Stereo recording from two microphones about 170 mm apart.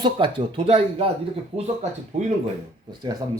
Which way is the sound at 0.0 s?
30° right (ahead or behind).